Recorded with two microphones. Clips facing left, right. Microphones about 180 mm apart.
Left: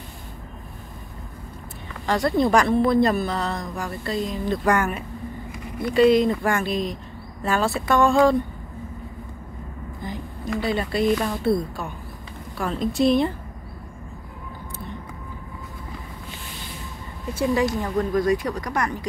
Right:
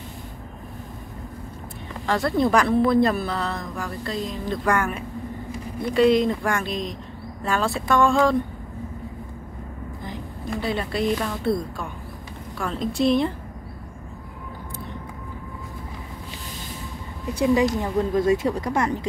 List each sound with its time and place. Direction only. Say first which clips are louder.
2.0 s a woman's voice: left 1 dB; centre (ahead or behind)
10.0 s a woman's voice: left 3 dB; centre (ahead or behind)
17.3 s speech: right 2 dB; 15° right (ahead or behind)